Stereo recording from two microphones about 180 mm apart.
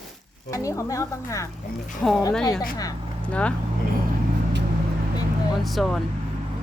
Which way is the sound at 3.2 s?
5° left (ahead or behind).